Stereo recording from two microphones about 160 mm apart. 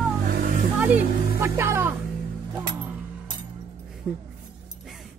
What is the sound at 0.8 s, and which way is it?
Music, 10° right (ahead or behind).